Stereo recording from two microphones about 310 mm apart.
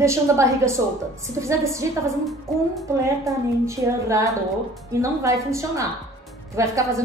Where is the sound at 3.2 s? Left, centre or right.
Centre.